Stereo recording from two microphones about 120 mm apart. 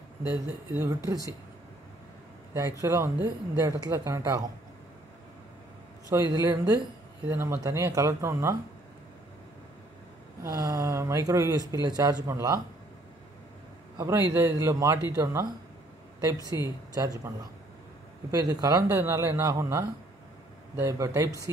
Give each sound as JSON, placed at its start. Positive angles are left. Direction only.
{"t": 0.3, "sound": "speech", "side_deg": -25}
{"t": 2.8, "sound": "speech", "side_deg": -20}
{"t": 6.0, "sound": "speech", "side_deg": -25}
{"t": 10.4, "sound": "speech", "side_deg": -25}
{"t": 13.9, "sound": "speech", "side_deg": -25}
{"t": 16.4, "sound": "speech", "side_deg": -25}
{"t": 18.3, "sound": "speech", "side_deg": -30}